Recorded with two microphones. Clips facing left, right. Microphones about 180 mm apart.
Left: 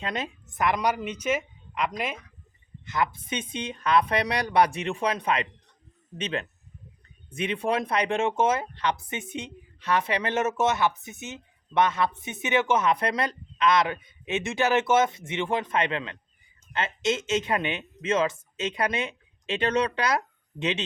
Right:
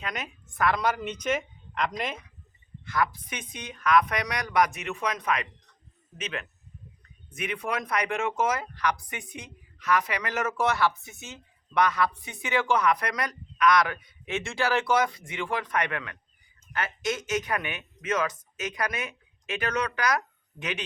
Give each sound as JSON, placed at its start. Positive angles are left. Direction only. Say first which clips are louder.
{"t": 0.0, "sound": "a woman's voice", "louder": "left 4 dB", "side_deg": 30}
{"t": 2.8, "sound": "speech", "louder": "even", "side_deg": 20}